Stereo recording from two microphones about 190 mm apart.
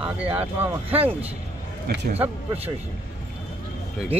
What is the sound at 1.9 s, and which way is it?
Speech, 60° right (ahead or behind).